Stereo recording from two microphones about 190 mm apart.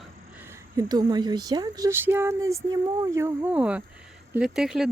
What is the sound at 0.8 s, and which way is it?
Speech, 20° right (ahead or behind).